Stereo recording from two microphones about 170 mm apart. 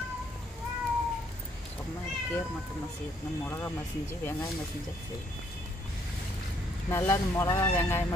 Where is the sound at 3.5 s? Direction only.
15° left (ahead or behind).